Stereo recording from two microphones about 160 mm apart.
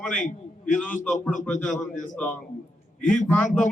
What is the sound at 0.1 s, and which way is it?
Speech, 50° left (ahead or behind).